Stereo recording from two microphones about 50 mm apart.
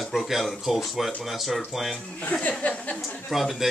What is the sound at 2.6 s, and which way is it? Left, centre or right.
Speech, left.